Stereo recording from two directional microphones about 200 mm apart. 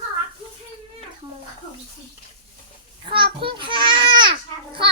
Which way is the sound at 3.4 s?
25° right (ahead or behind).